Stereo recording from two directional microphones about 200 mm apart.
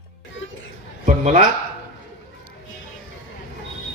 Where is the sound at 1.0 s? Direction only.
35° right (ahead or behind).